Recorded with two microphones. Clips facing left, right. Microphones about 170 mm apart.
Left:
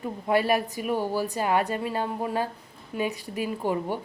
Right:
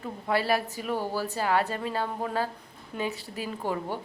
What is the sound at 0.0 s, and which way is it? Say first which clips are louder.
A woman's voice: left 4 dB; 15° left (ahead or behind).